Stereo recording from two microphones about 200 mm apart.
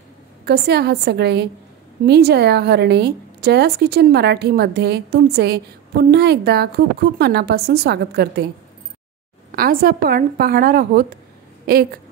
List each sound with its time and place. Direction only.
0.5 s a woman's voice: 55° right (ahead or behind)
9.5 s a woman's voice: 45° right (ahead or behind)